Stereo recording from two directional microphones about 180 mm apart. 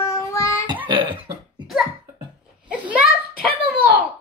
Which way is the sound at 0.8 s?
25° right (ahead or behind).